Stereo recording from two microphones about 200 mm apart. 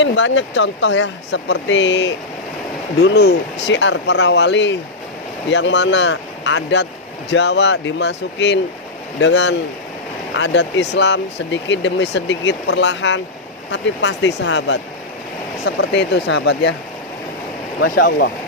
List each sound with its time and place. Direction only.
0.0 s speech: 65° left (ahead or behind)
17.9 s speech: 55° left (ahead or behind)